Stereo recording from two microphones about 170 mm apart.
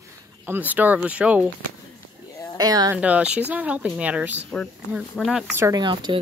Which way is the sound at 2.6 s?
20° right (ahead or behind).